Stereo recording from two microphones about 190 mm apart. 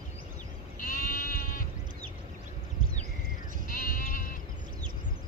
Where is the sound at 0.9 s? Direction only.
50° left (ahead or behind).